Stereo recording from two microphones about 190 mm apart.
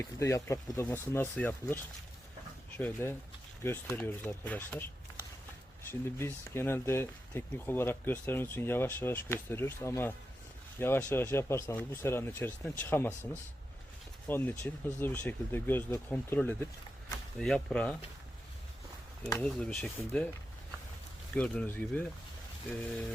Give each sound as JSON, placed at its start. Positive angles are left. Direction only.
{"t": 0.0, "sound": "speech", "side_deg": 15}
{"t": 5.9, "sound": "speech", "side_deg": 10}
{"t": 14.3, "sound": "speech", "side_deg": 10}
{"t": 19.4, "sound": "speech", "side_deg": 5}
{"t": 21.3, "sound": "speech", "side_deg": 5}